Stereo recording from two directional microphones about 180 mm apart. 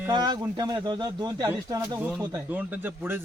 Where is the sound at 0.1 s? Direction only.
25° right (ahead or behind).